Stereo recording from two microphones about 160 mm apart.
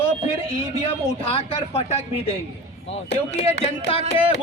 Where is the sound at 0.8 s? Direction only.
35° left (ahead or behind).